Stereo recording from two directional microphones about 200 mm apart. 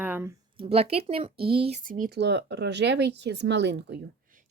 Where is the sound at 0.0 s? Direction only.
10° right (ahead or behind).